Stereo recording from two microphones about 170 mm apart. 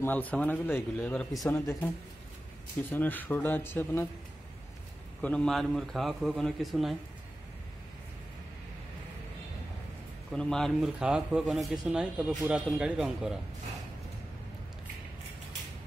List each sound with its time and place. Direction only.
0.0 s speech: 10° left (ahead or behind)
2.9 s speech: 10° left (ahead or behind)
5.2 s a man's voice: 5° left (ahead or behind)
10.3 s a man's voice: 5° left (ahead or behind)